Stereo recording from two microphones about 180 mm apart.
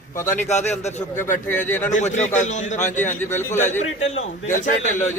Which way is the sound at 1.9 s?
40° left (ahead or behind).